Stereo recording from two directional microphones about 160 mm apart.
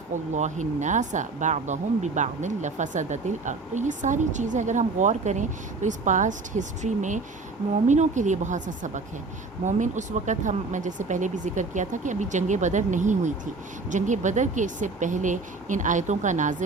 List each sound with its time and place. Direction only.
0.3 s speech: 50° right (ahead or behind)